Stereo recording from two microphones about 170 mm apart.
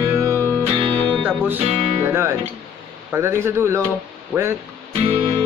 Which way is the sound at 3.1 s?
15° right (ahead or behind).